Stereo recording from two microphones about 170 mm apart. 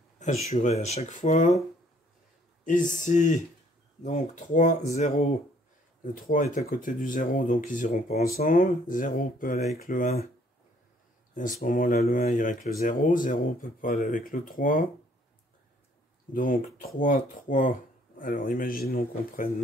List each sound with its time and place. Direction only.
0.2 s speech: 40° left (ahead or behind)
2.6 s speech: 50° left (ahead or behind)
6.1 s speech: 50° left (ahead or behind)
11.6 s speech: 55° left (ahead or behind)
16.3 s speech: 55° left (ahead or behind)